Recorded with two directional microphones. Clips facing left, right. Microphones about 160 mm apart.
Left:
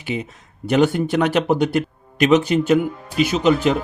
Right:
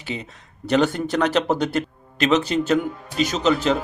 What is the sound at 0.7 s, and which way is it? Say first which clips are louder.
Speech: left 3 dB; 10° left (ahead or behind).